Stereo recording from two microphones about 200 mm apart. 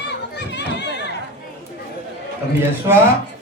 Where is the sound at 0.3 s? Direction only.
60° left (ahead or behind).